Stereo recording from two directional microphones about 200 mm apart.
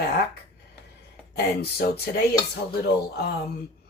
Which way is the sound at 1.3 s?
55° left (ahead or behind).